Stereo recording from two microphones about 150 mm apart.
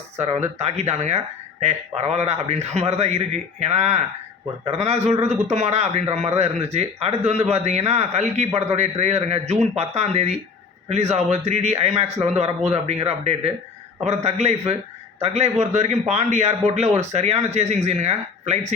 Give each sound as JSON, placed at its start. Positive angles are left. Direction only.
{"t": 0.3, "sound": "a man's voice", "side_deg": -50}